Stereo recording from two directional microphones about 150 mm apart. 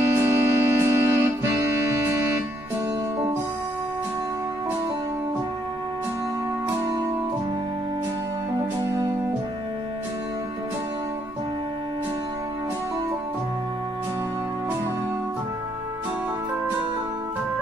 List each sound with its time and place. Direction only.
0.1 s music: 15° right (ahead or behind)